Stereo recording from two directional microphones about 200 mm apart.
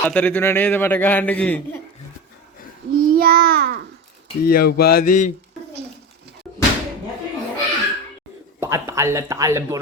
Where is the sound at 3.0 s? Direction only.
50° right (ahead or behind).